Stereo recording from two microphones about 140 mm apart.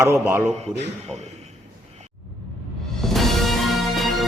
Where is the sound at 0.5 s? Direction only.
50° right (ahead or behind).